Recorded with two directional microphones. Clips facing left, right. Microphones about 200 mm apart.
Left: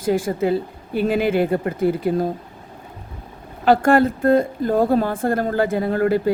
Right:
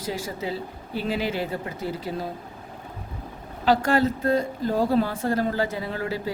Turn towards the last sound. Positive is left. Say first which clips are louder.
# left 11 dB
turn(degrees=55)  # may be behind; listen again after turning